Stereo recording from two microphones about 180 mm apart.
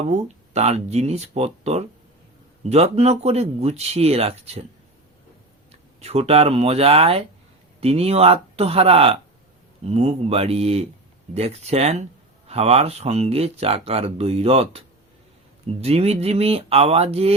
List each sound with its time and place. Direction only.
0.1 s speech: 35° right (ahead or behind)
6.0 s speech: 35° right (ahead or behind)